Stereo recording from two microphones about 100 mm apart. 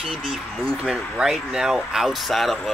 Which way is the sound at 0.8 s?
5° right (ahead or behind).